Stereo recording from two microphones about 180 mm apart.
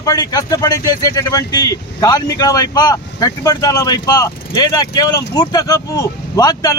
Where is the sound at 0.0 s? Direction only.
20° left (ahead or behind).